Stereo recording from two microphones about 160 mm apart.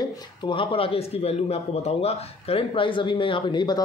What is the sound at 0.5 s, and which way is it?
A man's voice, 35° left (ahead or behind).